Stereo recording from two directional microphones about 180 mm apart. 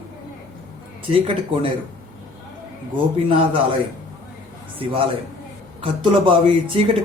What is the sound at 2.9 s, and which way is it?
Speech, 30° right (ahead or behind).